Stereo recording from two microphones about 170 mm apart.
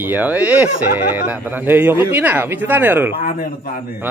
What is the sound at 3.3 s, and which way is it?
Speech, 55° left (ahead or behind).